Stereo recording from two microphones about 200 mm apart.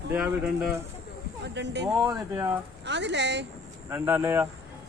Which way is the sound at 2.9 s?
60° right (ahead or behind).